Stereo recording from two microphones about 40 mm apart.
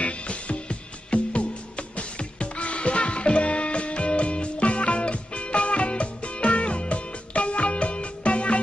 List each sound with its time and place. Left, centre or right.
0.0 s music: left